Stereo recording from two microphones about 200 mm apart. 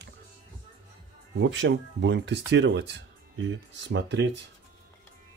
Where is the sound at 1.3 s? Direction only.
65° right (ahead or behind).